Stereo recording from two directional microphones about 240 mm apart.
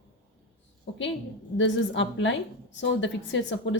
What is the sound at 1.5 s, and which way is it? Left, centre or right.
A woman's voice, left.